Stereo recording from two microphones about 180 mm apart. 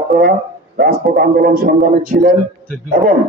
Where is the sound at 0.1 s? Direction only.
60° right (ahead or behind).